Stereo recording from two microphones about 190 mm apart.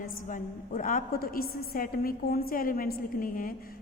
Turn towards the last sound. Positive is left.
turn(degrees=50)  # may be behind; listen again after turning